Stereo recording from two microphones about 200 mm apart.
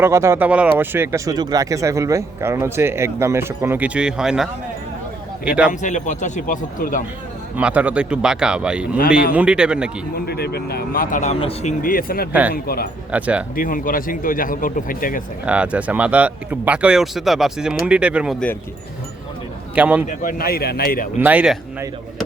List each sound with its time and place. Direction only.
0.0 s speech: 15° right (ahead or behind)
5.5 s speech: 5° right (ahead or behind)
5.8 s speech: 35° left (ahead or behind)
7.5 s speech: 5° right (ahead or behind)
10.2 s a man's voice: 50° left (ahead or behind); by 11.7 s 30° left (ahead or behind)
11.8 s a man's voice: 45° left (ahead or behind)
12.3 s speech: 5° right (ahead or behind)
12.6 s a man's voice: 50° left (ahead or behind)
13.1 s speech: 5° right (ahead or behind)
13.6 s a man's voice: 45° left (ahead or behind)
15.4 s speech: 5° right (ahead or behind)
19.7 s speech: 5° right (ahead or behind)
20.1 s a man's voice: 45° left (ahead or behind)
21.2 s speech: 5° right (ahead or behind)